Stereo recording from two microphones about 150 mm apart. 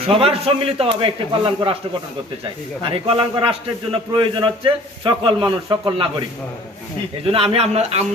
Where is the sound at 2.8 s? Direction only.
35° right (ahead or behind).